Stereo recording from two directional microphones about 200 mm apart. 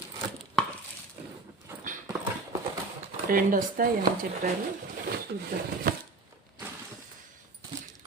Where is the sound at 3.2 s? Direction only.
45° right (ahead or behind).